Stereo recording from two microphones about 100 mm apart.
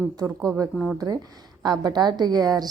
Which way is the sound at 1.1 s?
40° right (ahead or behind).